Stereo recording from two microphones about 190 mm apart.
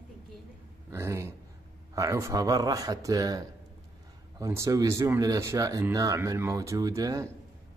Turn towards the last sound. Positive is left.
turn(degrees=-15)  # may be behind; listen again after turning